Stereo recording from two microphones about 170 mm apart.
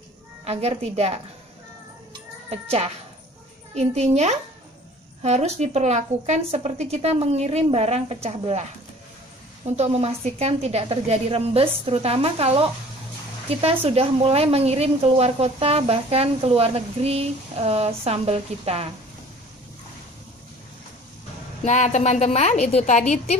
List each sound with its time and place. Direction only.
0.5 s a woman's voice: 40° right (ahead or behind)
2.5 s a woman's voice: 35° right (ahead or behind)
9.8 s a woman's voice: 40° right (ahead or behind)
21.6 s a woman's voice: 45° left (ahead or behind)